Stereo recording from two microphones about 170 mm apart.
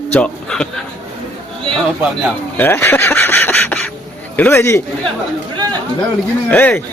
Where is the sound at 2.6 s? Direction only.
10° left (ahead or behind).